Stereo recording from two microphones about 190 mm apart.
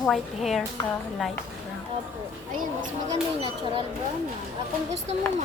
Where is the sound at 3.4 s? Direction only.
30° right (ahead or behind).